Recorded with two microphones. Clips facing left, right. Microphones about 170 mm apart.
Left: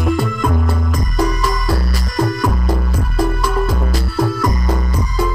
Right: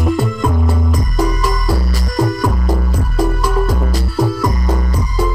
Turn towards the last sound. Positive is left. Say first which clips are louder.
# right 1 dB
turn(degrees=-10)  # may be behind; listen again after turning